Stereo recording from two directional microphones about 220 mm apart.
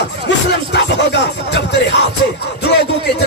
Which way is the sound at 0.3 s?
50° left (ahead or behind).